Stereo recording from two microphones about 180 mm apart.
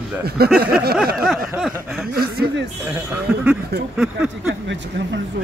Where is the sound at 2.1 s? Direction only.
60° right (ahead or behind).